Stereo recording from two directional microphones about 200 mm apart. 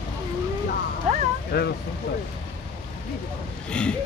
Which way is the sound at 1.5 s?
55° left (ahead or behind).